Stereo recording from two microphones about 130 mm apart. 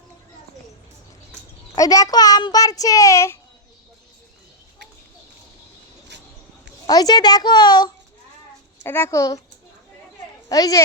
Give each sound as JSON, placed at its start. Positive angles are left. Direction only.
{"t": 1.7, "sound": "a child's voice", "side_deg": 25}
{"t": 6.8, "sound": "a woman's voice", "side_deg": 30}
{"t": 8.8, "sound": "a child's voice", "side_deg": 20}
{"t": 10.5, "sound": "a child's voice", "side_deg": 25}